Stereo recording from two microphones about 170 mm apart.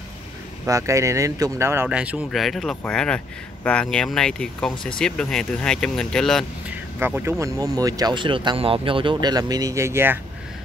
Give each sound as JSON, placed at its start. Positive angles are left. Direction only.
{"t": 0.7, "sound": "speech", "side_deg": -20}
{"t": 7.0, "sound": "speech", "side_deg": -10}